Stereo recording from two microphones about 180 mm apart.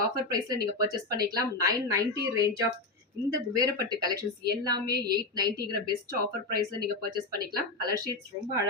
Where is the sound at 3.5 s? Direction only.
20° right (ahead or behind).